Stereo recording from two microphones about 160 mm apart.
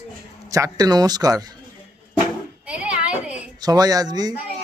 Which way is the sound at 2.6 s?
10° right (ahead or behind).